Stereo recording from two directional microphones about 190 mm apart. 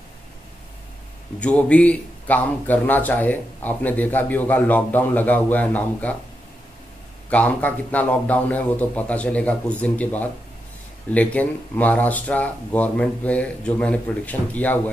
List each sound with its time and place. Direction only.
1.4 s speech: 5° left (ahead or behind)
7.2 s speech: 5° left (ahead or behind)